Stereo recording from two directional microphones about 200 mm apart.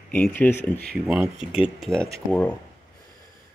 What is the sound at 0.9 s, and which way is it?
Speech, 5° right (ahead or behind).